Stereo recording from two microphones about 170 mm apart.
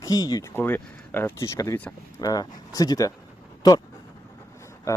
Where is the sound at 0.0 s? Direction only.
20° left (ahead or behind).